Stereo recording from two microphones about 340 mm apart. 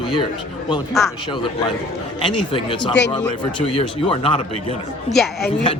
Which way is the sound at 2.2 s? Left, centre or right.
Centre.